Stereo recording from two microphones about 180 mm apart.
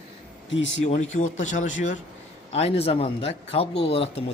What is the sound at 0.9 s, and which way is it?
Speech, 40° left (ahead or behind).